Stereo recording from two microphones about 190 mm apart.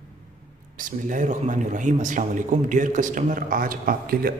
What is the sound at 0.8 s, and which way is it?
A man's voice, 45° right (ahead or behind).